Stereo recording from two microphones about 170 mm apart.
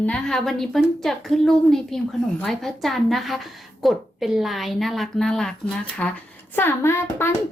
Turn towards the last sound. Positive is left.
turn(degrees=15)  # may be behind; listen again after turning